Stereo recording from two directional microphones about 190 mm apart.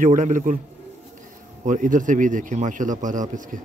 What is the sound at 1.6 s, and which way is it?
A man's voice, 40° right (ahead or behind).